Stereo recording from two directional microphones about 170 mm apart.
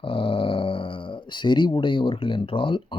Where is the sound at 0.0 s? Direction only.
30° left (ahead or behind).